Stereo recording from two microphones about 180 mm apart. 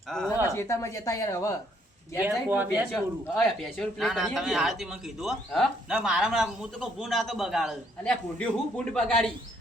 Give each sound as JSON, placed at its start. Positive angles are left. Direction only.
{"t": 0.1, "sound": "a man's voice", "side_deg": 5}
{"t": 0.4, "sound": "speech", "side_deg": 15}
{"t": 2.2, "sound": "speech", "side_deg": -10}
{"t": 2.9, "sound": "a man's voice", "side_deg": 5}